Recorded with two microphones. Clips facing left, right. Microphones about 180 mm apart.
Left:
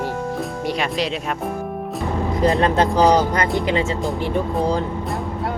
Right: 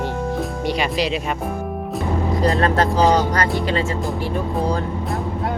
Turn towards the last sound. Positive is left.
turn(degrees=20)  # may be behind; listen again after turning